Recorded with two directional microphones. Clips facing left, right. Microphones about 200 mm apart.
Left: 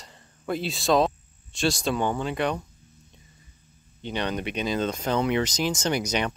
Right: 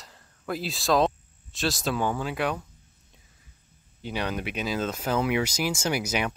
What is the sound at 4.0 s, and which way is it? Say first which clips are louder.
Speech: left 2 dB; 5° right (ahead or behind).